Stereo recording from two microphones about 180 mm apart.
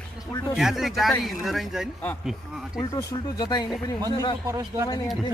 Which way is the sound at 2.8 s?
20° left (ahead or behind).